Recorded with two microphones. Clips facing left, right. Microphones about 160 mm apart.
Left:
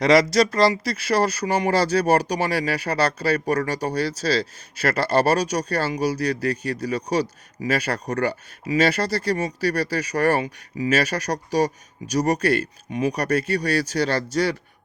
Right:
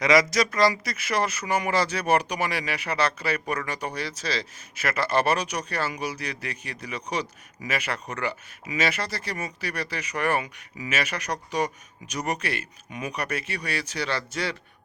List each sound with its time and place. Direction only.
0.0 s speech: 35° left (ahead or behind)